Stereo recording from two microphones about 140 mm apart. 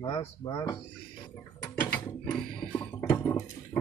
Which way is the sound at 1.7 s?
10° left (ahead or behind).